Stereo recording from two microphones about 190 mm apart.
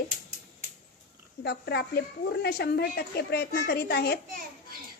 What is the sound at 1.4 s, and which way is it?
Speech, 60° left (ahead or behind).